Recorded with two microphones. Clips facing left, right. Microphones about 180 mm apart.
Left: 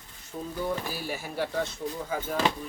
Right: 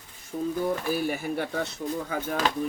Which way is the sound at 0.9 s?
55° right (ahead or behind).